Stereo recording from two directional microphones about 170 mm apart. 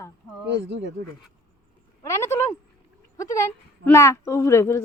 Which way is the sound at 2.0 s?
15° left (ahead or behind).